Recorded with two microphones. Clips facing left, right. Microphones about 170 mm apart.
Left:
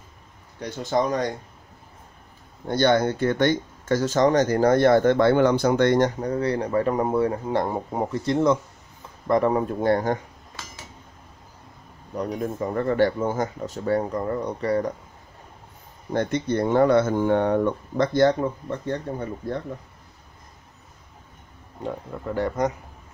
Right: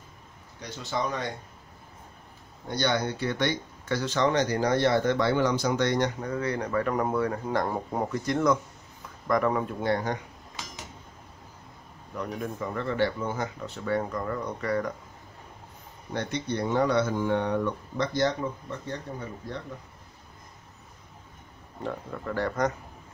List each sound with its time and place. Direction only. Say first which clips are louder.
0.6 s speech: left 8 dB; 50° left (ahead or behind)
2.7 s speech: left 7 dB; 50° left (ahead or behind)
6.3 s speech: left 5 dB; 35° left (ahead or behind)
12.2 s speech: left 6 dB; 35° left (ahead or behind)
12.7 s speech: left 7 dB; 45° left (ahead or behind)
16.1 s speech: left 7 dB; 50° left (ahead or behind)
21.8 s speech: left 3 dB; 20° left (ahead or behind)